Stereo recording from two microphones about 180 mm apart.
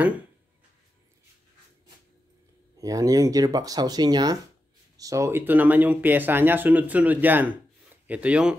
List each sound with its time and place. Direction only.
2.8 s speech: 20° right (ahead or behind)